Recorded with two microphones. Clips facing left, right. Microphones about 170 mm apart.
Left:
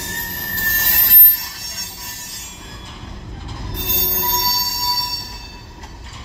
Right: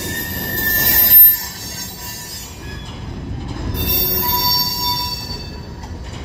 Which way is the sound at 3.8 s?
15° right (ahead or behind).